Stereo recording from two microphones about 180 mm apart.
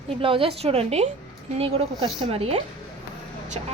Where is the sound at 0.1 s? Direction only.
30° right (ahead or behind).